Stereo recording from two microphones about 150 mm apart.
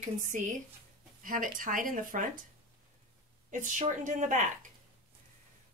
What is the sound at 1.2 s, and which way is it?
Speech, 65° right (ahead or behind).